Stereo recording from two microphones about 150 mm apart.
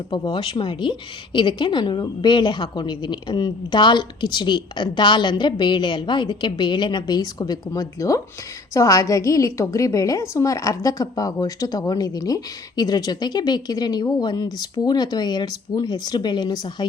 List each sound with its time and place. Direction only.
0.1 s a woman's voice: 30° left (ahead or behind)